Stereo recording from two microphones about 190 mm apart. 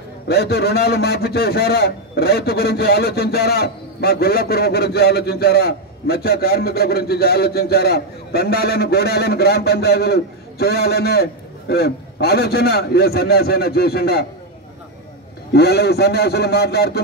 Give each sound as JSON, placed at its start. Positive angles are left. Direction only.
{"t": 0.3, "sound": "a man's voice", "side_deg": 60}
{"t": 15.5, "sound": "a man's voice", "side_deg": 60}